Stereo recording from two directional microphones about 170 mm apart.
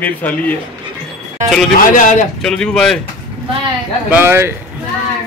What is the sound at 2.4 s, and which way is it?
Speech, 5° left (ahead or behind).